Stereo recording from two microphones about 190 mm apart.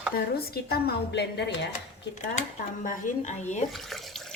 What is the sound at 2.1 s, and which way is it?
A woman's voice, 40° left (ahead or behind).